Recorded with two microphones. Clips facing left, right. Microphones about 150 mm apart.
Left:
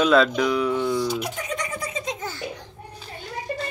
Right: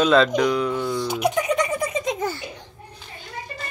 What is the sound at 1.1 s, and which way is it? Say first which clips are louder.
Giggle: right 7 dB; 75° right (ahead or behind).